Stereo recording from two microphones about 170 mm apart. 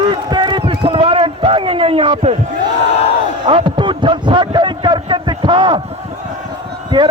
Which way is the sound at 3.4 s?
30° right (ahead or behind).